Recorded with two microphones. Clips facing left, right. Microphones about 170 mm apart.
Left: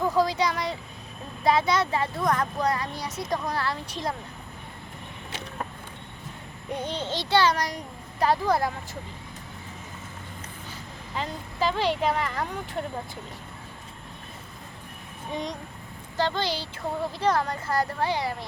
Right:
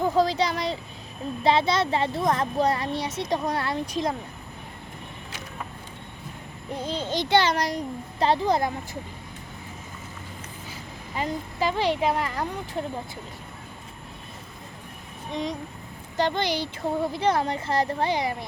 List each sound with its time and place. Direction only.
0.0 s a sound: 30° right (ahead or behind)
1.5 s speech: 30° right (ahead or behind)
6.8 s a child's voice: 10° right (ahead or behind)
10.7 s speech: 10° right (ahead or behind)
15.3 s speech: centre (ahead or behind)
16.1 s a child's voice: 20° right (ahead or behind)